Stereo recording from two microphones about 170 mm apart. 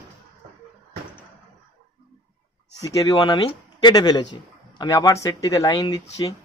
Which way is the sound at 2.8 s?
20° left (ahead or behind).